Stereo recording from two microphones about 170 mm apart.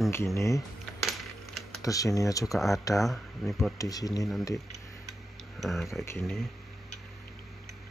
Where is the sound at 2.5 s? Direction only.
Centre (ahead or behind).